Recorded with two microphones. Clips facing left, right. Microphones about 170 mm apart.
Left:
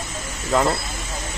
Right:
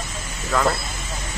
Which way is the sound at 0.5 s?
25° left (ahead or behind).